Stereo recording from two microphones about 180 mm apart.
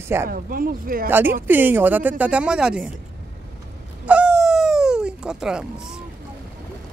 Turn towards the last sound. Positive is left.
turn(degrees=-5)  # may be behind; listen again after turning